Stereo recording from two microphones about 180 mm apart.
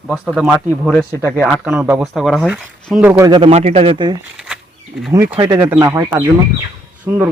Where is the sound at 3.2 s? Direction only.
25° right (ahead or behind).